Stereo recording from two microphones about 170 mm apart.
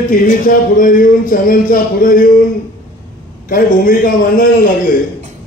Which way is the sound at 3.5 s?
55° left (ahead or behind).